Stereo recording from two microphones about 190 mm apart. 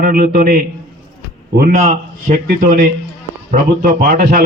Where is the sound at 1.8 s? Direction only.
40° right (ahead or behind).